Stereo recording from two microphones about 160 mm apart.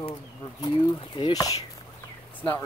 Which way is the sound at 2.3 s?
10° left (ahead or behind).